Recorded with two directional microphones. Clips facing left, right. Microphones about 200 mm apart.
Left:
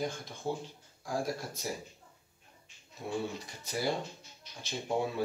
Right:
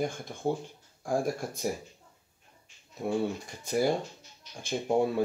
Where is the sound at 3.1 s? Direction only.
50° right (ahead or behind).